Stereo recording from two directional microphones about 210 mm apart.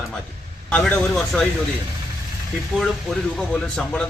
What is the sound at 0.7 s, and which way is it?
Speech, 5° left (ahead or behind).